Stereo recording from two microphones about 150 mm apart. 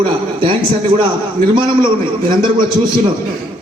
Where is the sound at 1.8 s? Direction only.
30° right (ahead or behind).